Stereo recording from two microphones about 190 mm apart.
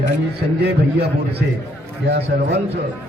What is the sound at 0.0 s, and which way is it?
A man's voice, 60° right (ahead or behind).